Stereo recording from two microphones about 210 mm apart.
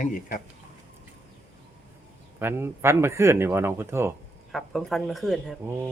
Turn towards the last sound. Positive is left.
turn(degrees=0)  # may be behind; listen again after turning